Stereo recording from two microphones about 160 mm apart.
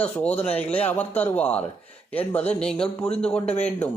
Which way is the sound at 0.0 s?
10° left (ahead or behind).